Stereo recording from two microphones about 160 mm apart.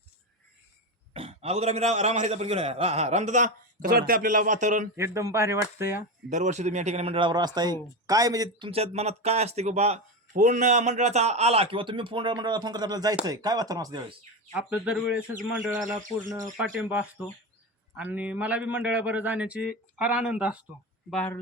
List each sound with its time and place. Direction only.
1.1 s a man's voice: 40° right (ahead or behind)
4.9 s a man's voice: 15° right (ahead or behind)
6.3 s speech: 50° right (ahead or behind); by 13.1 s 25° right (ahead or behind)
13.2 s chopping: 25° right (ahead or behind)
14.5 s a man's voice: 5° right (ahead or behind)
21.1 s speech: 5° left (ahead or behind)